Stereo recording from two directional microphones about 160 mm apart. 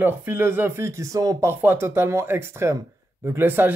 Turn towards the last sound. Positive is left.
turn(degrees=-15)  # may be behind; listen again after turning